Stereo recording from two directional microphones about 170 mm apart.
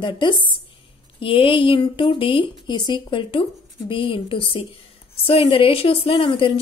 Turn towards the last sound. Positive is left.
turn(degrees=30)  # may be behind; listen again after turning